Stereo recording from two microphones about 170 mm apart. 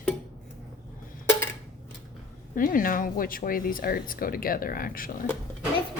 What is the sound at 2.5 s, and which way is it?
Speech, 55° left (ahead or behind).